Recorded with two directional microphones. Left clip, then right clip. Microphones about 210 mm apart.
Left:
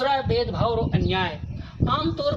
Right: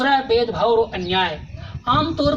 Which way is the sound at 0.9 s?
15° left (ahead or behind).